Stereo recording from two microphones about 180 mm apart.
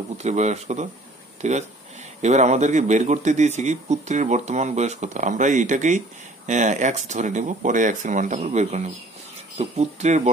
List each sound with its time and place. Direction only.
0.2 s speech: 40° right (ahead or behind)